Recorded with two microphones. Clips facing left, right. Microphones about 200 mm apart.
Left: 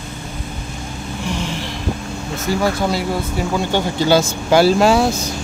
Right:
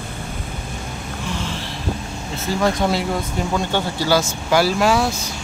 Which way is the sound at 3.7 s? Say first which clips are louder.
Left 5 dB; 25° left (ahead or behind).